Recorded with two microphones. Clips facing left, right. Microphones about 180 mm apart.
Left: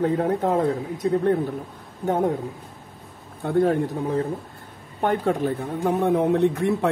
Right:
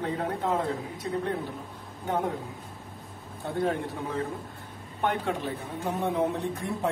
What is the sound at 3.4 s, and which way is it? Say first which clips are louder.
Speech: left 8 dB; 45° left (ahead or behind).